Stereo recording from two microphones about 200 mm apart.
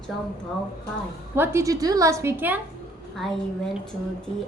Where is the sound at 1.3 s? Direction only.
10° right (ahead or behind).